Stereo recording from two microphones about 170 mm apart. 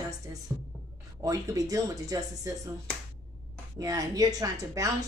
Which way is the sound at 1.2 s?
20° right (ahead or behind).